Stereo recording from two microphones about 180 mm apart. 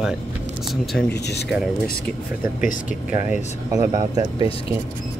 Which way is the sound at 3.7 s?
20° right (ahead or behind).